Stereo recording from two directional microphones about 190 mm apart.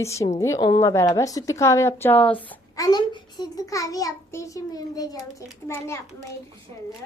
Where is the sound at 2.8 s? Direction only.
20° left (ahead or behind).